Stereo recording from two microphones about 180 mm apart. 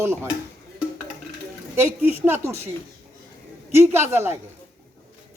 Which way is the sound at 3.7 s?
15° right (ahead or behind).